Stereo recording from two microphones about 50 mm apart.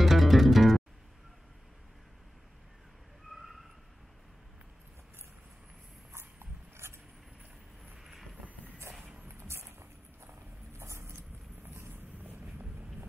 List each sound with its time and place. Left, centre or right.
0.0 s music: centre
6.1 s a sound: right
8.0 s vehicle: centre
9.4 s a sound: right
10.8 s vehicle: right
11.6 s vehicle: right